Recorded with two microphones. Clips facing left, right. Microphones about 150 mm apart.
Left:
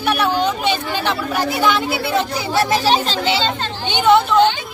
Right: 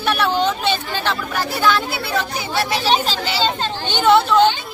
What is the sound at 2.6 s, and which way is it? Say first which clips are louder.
Speech: left 4 dB; 40° left (ahead or behind).